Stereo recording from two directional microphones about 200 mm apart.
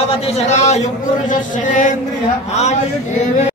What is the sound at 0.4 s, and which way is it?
A man's voice, 35° left (ahead or behind).